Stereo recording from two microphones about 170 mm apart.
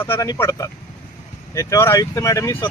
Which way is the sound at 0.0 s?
15° left (ahead or behind).